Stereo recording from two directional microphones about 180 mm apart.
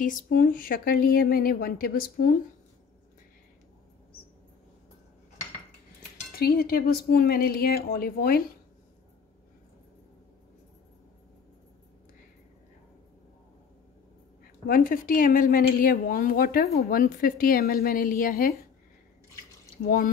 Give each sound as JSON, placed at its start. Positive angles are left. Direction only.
{"t": 0.0, "sound": "speech", "side_deg": 50}
{"t": 6.3, "sound": "speech", "side_deg": 60}
{"t": 14.7, "sound": "a woman's voice", "side_deg": 50}
{"t": 19.8, "sound": "a woman's voice", "side_deg": 50}